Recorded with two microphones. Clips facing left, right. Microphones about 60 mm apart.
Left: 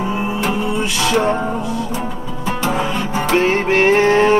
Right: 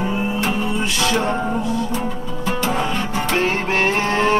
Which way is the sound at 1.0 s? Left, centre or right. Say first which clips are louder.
Left 4 dB; centre.